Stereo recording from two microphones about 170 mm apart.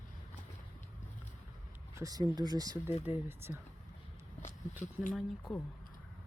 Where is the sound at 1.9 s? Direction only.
20° right (ahead or behind).